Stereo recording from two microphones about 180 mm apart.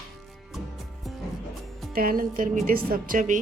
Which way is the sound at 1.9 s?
55° right (ahead or behind).